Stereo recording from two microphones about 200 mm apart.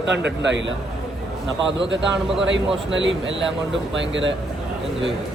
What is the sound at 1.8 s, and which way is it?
A man's voice, 65° right (ahead or behind).